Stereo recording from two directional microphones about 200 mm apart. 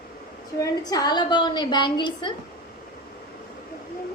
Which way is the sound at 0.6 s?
20° left (ahead or behind).